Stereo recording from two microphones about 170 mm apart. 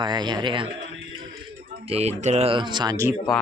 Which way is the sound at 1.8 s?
40° right (ahead or behind).